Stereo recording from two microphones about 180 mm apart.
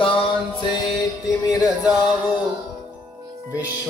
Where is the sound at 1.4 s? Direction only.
20° left (ahead or behind).